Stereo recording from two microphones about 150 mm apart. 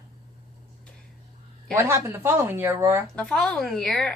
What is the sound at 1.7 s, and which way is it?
Speech, 15° right (ahead or behind).